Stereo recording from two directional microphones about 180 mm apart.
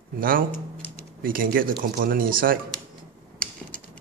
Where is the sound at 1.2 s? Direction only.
50° right (ahead or behind).